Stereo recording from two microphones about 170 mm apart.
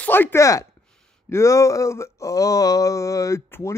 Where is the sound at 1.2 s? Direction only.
15° left (ahead or behind).